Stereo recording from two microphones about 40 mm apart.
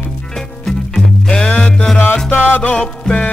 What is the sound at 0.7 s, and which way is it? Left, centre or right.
Music, centre.